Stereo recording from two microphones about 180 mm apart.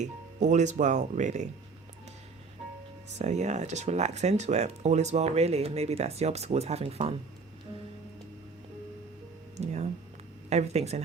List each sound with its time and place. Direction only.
0.0 s speech: 40° right (ahead or behind)
3.2 s speech: 40° right (ahead or behind)
9.6 s a sound: 40° right (ahead or behind)
10.5 s speech: 35° right (ahead or behind)